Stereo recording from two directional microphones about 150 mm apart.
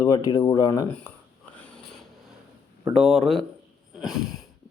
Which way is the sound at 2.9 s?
Centre (ahead or behind).